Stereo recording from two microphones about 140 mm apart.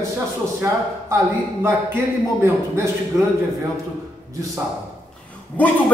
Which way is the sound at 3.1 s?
20° right (ahead or behind).